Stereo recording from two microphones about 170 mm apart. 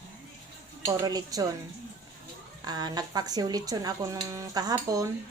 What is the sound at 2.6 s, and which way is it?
A woman's voice, 25° right (ahead or behind).